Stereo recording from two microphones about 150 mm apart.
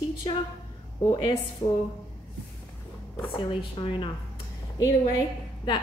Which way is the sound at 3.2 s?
35° left (ahead or behind).